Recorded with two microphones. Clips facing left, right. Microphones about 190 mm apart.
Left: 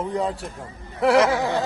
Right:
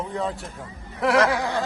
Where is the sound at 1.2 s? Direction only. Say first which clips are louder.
Left 2 dB; 20° left (ahead or behind).